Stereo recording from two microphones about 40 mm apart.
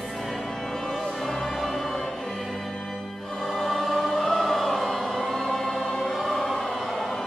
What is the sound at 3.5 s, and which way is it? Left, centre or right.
Choir, centre.